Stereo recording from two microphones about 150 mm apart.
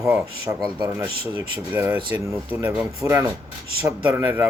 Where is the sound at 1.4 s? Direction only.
10° right (ahead or behind).